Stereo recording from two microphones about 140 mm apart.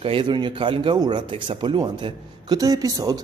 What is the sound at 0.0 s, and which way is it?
A man's voice, 40° right (ahead or behind).